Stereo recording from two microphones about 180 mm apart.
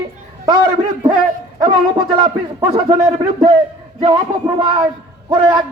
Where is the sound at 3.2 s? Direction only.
35° right (ahead or behind).